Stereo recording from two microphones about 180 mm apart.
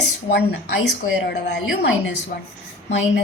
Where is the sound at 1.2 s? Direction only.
70° left (ahead or behind).